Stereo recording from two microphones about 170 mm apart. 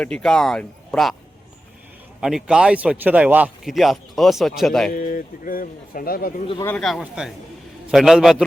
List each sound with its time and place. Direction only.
0.0 s speech: 5° left (ahead or behind)
2.2 s speech: 5° right (ahead or behind)
4.9 s speech: 55° left (ahead or behind)
6.7 s speech: 5° left (ahead or behind)